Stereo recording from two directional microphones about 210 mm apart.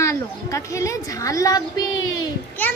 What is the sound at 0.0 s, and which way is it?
A woman's voice, 15° left (ahead or behind).